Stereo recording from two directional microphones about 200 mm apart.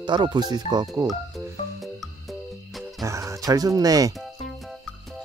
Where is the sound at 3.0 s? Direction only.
15° right (ahead or behind).